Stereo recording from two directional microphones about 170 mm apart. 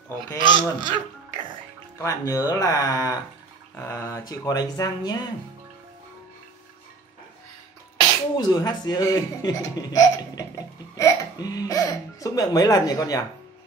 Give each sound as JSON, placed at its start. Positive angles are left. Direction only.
{"t": 0.3, "sound": "speech", "side_deg": 25}
{"t": 8.4, "sound": "speech", "side_deg": 25}